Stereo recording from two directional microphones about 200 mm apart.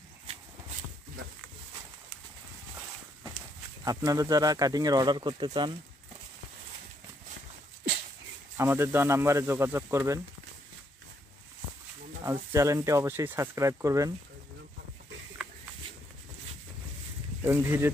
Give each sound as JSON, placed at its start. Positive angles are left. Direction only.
{"t": 3.8, "sound": "speech", "side_deg": -20}
{"t": 8.5, "sound": "speech", "side_deg": -10}
{"t": 12.2, "sound": "speech", "side_deg": -15}
{"t": 17.4, "sound": "speech", "side_deg": -10}